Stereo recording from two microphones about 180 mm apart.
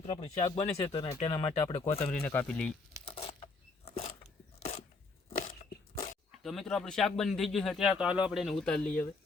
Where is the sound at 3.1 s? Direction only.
30° left (ahead or behind).